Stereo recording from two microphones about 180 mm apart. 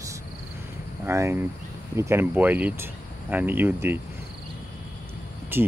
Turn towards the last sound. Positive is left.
turn(degrees=-10)  # may be behind; listen again after turning